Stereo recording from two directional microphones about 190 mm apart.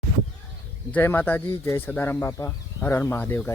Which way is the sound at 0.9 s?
10° left (ahead or behind).